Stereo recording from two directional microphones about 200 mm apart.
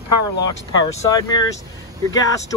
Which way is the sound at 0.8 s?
20° left (ahead or behind).